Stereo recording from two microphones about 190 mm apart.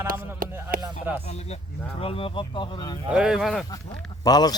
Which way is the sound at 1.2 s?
35° left (ahead or behind).